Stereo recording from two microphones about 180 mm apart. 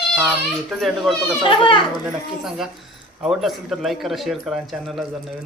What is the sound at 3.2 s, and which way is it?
Speech, centre (ahead or behind).